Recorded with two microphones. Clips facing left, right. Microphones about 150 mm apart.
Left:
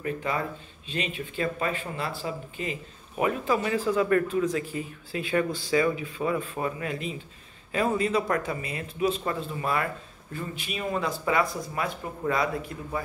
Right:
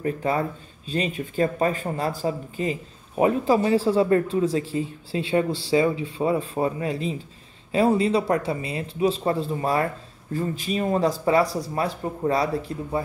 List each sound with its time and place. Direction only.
0.0 s speech: 35° right (ahead or behind)